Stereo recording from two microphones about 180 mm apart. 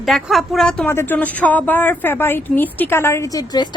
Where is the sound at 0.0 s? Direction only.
Centre (ahead or behind).